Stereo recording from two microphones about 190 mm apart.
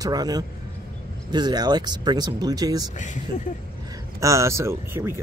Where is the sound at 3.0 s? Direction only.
40° left (ahead or behind).